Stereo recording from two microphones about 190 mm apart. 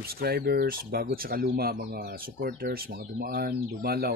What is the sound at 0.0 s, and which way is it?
Speech, 55° right (ahead or behind).